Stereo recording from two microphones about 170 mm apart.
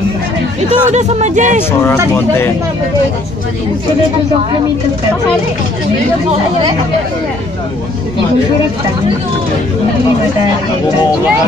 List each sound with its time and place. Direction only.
0.6 s speech: 40° right (ahead or behind)
1.7 s speech: 15° left (ahead or behind)